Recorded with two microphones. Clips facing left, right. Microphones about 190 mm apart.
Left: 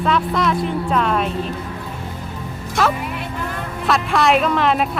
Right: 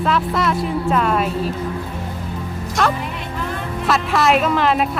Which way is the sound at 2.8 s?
5° left (ahead or behind).